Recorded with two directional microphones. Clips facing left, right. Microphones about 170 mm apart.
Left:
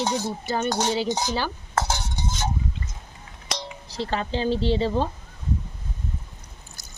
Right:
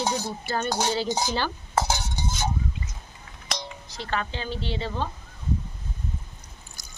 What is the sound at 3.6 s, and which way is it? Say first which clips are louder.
Speech: left 6 dB; 30° left (ahead or behind).